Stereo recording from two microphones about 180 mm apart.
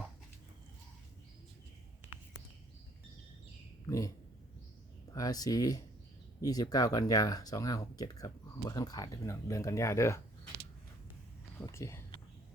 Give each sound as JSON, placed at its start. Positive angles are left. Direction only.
{"t": 3.8, "sound": "speech", "side_deg": 20}
{"t": 5.1, "sound": "speech", "side_deg": 20}
{"t": 11.6, "sound": "speech", "side_deg": 15}